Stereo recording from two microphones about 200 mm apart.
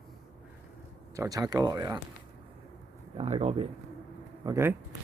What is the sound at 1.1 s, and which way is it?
Speech, 15° right (ahead or behind).